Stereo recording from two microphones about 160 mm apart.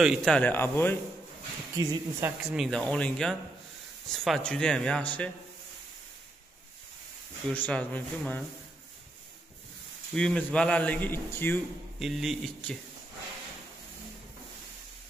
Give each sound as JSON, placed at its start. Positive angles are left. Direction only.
{"t": 0.0, "sound": "a man's voice", "side_deg": 0}
{"t": 1.8, "sound": "a woman's voice", "side_deg": -20}
{"t": 2.4, "sound": "speech", "side_deg": 0}
{"t": 7.5, "sound": "a man's voice", "side_deg": 10}
{"t": 10.1, "sound": "a man's voice", "side_deg": 5}
{"t": 12.0, "sound": "speech", "side_deg": 0}